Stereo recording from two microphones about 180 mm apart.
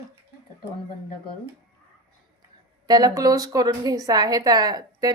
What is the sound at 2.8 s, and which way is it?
A woman's voice, 20° right (ahead or behind).